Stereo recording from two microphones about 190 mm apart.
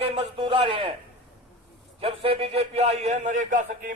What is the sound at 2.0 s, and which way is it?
A man's voice, 30° right (ahead or behind).